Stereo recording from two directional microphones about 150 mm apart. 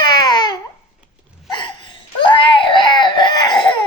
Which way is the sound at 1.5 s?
30° left (ahead or behind).